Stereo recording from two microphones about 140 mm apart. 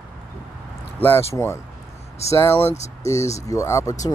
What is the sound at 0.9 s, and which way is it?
Speech, 15° left (ahead or behind).